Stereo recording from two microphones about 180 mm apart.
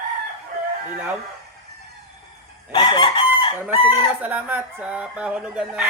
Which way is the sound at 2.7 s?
25° left (ahead or behind).